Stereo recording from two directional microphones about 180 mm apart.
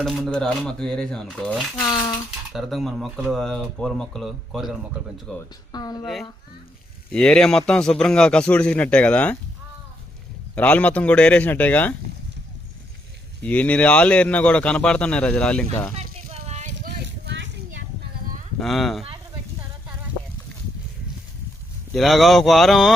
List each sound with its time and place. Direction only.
0.0 s a man's voice: centre (ahead or behind)
1.8 s speech: 20° left (ahead or behind)
2.5 s a man's voice: centre (ahead or behind)
5.7 s speech: 20° left (ahead or behind)
7.1 s a man's voice: 5° left (ahead or behind)
10.5 s a man's voice: 10° left (ahead or behind)
13.4 s a man's voice: 5° left (ahead or behind)
16.1 s a sound: 35° right (ahead or behind)
17.2 s a sound: 85° right
18.6 s a man's voice: centre (ahead or behind)
21.9 s a man's voice: centre (ahead or behind)